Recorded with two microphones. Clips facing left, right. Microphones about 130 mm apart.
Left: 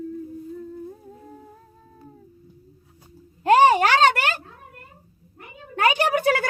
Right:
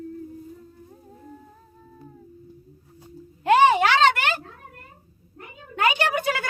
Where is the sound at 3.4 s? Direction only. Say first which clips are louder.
Left 2 dB; 40° left (ahead or behind).